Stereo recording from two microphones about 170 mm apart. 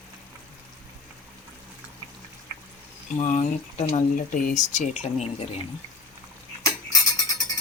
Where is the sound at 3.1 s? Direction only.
40° left (ahead or behind).